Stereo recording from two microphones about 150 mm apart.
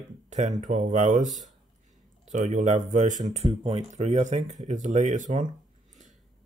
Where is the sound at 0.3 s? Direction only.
55° right (ahead or behind).